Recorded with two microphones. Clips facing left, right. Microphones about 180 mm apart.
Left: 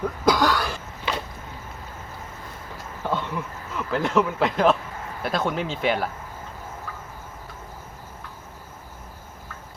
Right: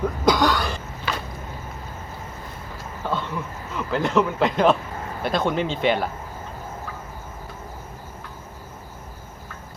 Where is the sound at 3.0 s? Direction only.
15° left (ahead or behind).